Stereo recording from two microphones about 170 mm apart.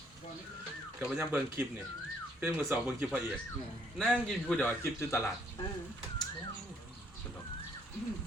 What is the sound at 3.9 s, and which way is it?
A man's voice, 5° left (ahead or behind).